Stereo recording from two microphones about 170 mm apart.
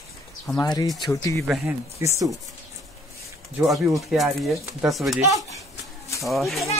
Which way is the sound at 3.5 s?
Centre (ahead or behind).